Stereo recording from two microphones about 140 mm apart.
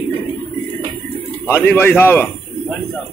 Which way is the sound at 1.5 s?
15° left (ahead or behind).